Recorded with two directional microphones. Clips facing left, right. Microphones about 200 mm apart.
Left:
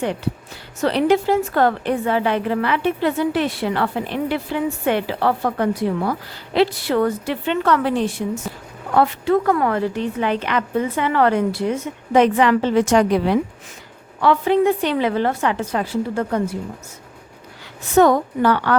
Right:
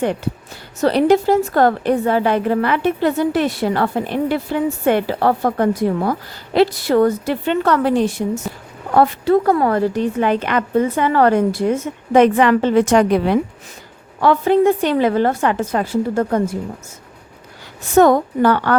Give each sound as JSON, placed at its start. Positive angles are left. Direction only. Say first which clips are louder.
{"t": 0.8, "sound": "a woman's voice", "louder": "right 3 dB", "side_deg": -40}
{"t": 14.2, "sound": "a woman's voice", "louder": "right 3 dB", "side_deg": -45}
{"t": 17.9, "sound": "a woman's voice", "louder": "right 2 dB", "side_deg": -45}